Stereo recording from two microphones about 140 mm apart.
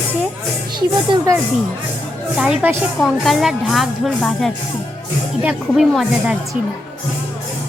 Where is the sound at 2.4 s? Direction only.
10° right (ahead or behind).